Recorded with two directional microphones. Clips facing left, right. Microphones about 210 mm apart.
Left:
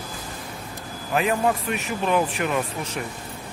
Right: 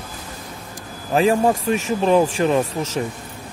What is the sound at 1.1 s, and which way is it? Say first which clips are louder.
Speech: right 6 dB; 30° right (ahead or behind).